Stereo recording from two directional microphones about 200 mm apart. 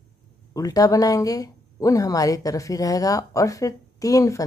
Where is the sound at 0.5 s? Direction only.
15° left (ahead or behind).